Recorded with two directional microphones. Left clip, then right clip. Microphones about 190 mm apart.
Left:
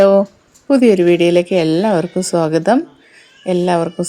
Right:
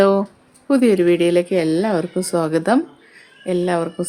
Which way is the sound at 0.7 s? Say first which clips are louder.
Left 4 dB; 10° left (ahead or behind).